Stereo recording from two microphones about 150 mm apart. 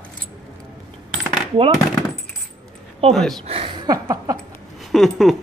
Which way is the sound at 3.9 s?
20° right (ahead or behind).